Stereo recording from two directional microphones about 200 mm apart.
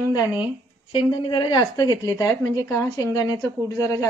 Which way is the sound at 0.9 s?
25° left (ahead or behind).